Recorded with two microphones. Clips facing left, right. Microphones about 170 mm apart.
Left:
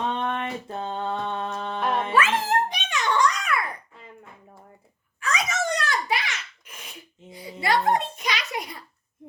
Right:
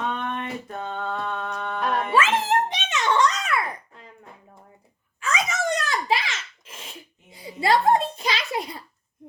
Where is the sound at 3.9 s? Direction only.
5° left (ahead or behind).